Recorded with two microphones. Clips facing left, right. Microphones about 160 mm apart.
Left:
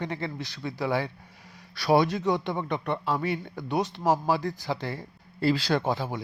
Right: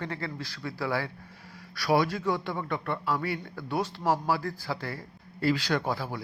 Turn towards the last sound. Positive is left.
turn(degrees=20)  # may be behind; listen again after turning